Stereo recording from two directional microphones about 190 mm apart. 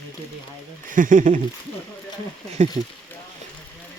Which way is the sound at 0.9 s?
45° right (ahead or behind).